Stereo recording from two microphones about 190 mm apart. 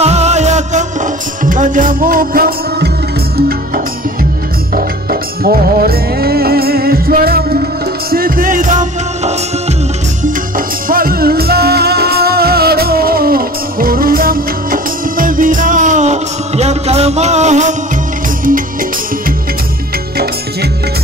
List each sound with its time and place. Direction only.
0.0 s music: 35° right (ahead or behind)
10.9 s music: 50° right (ahead or behind)